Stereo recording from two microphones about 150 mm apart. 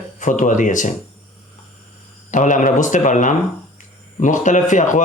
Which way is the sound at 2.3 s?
60° left (ahead or behind).